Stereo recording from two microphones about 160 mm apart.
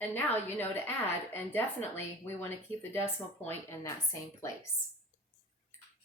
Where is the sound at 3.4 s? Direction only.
15° left (ahead or behind).